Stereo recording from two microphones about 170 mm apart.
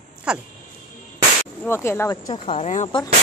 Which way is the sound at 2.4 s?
40° left (ahead or behind).